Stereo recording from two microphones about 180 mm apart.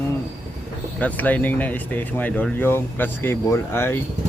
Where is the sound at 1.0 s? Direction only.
10° left (ahead or behind).